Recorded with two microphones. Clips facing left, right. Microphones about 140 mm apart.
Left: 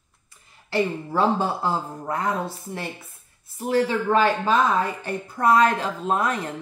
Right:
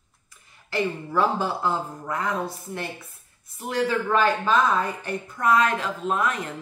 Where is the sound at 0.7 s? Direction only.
30° left (ahead or behind).